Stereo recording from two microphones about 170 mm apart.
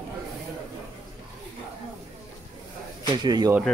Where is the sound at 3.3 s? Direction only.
25° right (ahead or behind).